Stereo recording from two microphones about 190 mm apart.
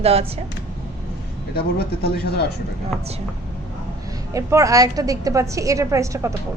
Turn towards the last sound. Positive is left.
turn(degrees=-15)  # may be behind; listen again after turning